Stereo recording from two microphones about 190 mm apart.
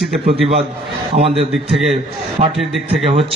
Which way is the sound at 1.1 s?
30° right (ahead or behind).